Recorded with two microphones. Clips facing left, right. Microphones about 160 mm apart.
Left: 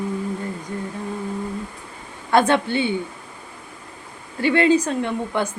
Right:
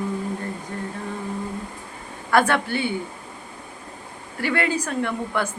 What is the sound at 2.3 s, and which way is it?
Speech, 20° left (ahead or behind).